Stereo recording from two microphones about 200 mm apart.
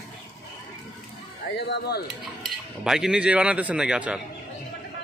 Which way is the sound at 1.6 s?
55° left (ahead or behind).